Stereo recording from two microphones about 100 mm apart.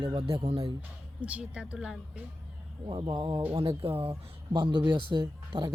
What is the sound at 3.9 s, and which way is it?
Speech, 25° right (ahead or behind).